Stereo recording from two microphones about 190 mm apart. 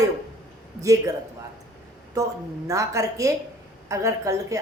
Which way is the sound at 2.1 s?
15° right (ahead or behind).